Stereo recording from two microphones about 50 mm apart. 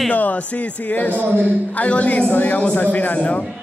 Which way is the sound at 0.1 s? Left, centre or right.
Left.